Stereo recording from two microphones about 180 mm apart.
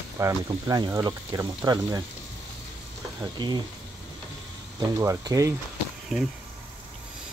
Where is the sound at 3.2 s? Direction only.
25° right (ahead or behind).